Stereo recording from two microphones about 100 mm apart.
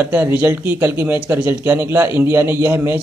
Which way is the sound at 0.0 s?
20° right (ahead or behind).